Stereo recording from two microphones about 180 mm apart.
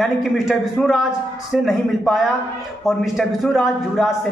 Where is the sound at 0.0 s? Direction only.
Centre (ahead or behind).